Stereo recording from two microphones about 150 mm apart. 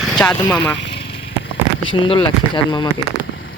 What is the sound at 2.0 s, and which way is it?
Speech, 35° left (ahead or behind).